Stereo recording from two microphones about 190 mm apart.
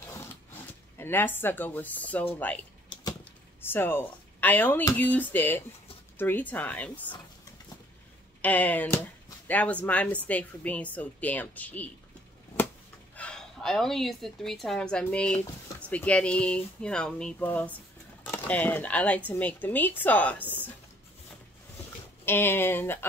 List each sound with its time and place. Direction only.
0.0 s a sound: 10° left (ahead or behind)
2.9 s typewriter: 20° left (ahead or behind)
3.6 s speech: 10° left (ahead or behind)
8.4 s speech: 10° left (ahead or behind)
13.1 s a woman's voice: 5° left (ahead or behind)
22.2 s speech: 10° left (ahead or behind)